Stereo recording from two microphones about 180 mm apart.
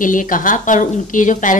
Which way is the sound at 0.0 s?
45° left (ahead or behind).